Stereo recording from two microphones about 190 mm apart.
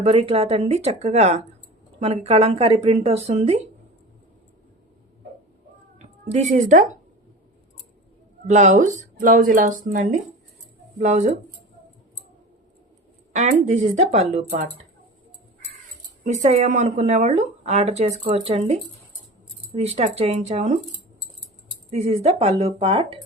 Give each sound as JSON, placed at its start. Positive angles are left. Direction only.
{"t": 0.0, "sound": "speech", "side_deg": -30}
{"t": 6.0, "sound": "speech", "side_deg": -35}
{"t": 8.4, "sound": "speech", "side_deg": -40}
{"t": 13.3, "sound": "speech", "side_deg": -35}
{"t": 16.2, "sound": "speech", "side_deg": -35}
{"t": 21.8, "sound": "speech", "side_deg": -35}